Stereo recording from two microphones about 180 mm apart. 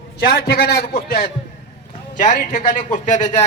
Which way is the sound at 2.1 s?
45° left (ahead or behind).